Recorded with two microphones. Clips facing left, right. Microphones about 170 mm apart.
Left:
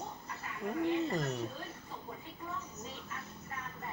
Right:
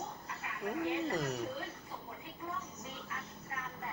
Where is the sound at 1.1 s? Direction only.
Centre (ahead or behind).